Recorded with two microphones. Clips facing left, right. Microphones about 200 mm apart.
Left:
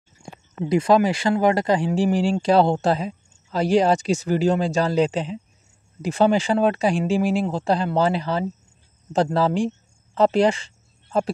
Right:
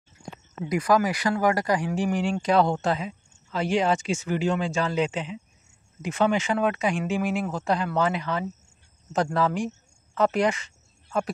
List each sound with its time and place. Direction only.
0.7 s speech: 25° left (ahead or behind)